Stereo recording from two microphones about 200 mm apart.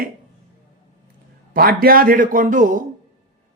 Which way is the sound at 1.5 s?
50° right (ahead or behind).